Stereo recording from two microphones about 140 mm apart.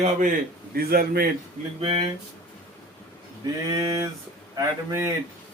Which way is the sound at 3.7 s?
25° right (ahead or behind).